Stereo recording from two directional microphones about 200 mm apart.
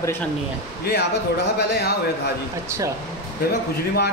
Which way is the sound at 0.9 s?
55° left (ahead or behind).